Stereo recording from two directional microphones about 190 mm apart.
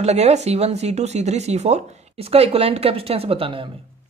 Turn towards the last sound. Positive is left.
turn(degrees=-30)  # may be behind; listen again after turning